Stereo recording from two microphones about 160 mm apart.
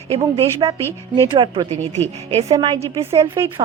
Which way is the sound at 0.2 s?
35° right (ahead or behind).